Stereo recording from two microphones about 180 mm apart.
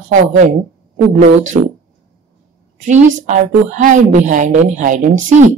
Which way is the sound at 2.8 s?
45° right (ahead or behind).